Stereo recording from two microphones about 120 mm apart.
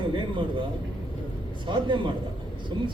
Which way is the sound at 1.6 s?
40° right (ahead or behind).